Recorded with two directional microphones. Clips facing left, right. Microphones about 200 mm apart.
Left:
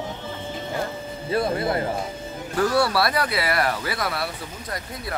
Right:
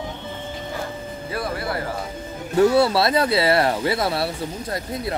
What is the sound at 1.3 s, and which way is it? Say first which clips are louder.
Speech: left 5 dB; 25° left (ahead or behind).